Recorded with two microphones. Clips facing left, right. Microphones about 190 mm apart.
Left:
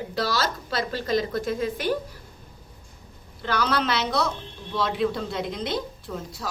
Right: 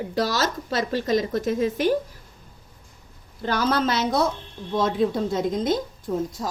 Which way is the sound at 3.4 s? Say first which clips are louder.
Right 3 dB; 45° right (ahead or behind).